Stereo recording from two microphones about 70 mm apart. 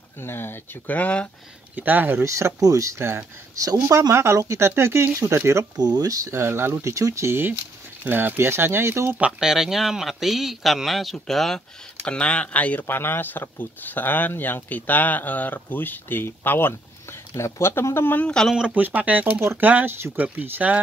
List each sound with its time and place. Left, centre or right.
0.2 s speech: left; by 1.3 s centre
1.8 s speech: right
2.2 s speech: right
4.1 s speech: right
5.8 s speech: right
6.3 s speech: right
9.4 s a man's voice: centre
12.0 s speech: centre
12.8 s speech: left
18.2 s speech: centre
18.5 s speech: centre
18.8 s speech: right